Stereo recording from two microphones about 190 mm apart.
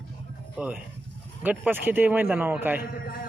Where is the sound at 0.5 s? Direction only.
5° right (ahead or behind).